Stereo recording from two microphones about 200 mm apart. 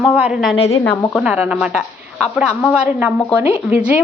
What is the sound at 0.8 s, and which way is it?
Speech, 10° left (ahead or behind).